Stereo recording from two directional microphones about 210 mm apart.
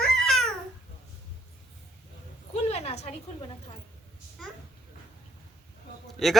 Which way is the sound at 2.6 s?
30° left (ahead or behind).